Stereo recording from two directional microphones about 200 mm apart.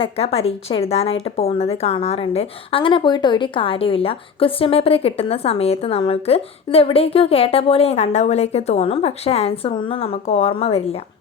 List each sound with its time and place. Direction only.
0.0 s a woman's voice: 30° left (ahead or behind)